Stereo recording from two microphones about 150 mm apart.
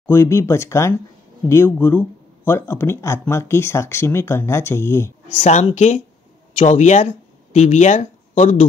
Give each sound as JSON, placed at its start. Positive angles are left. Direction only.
{"t": 0.0, "sound": "speech", "side_deg": 15}
{"t": 5.3, "sound": "speech", "side_deg": 50}